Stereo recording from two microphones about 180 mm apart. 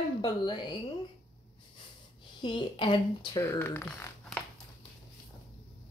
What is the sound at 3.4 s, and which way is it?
Speech, 15° left (ahead or behind).